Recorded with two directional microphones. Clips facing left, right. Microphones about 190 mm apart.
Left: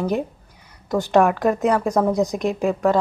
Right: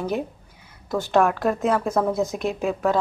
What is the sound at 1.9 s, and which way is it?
Speech, 15° left (ahead or behind).